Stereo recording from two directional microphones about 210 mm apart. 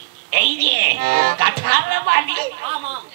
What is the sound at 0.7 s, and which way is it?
Speech, 45° right (ahead or behind).